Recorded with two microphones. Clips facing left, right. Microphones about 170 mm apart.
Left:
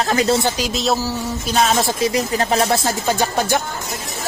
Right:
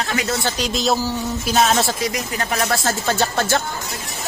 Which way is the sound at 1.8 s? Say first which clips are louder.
Left 3 dB; 20° left (ahead or behind).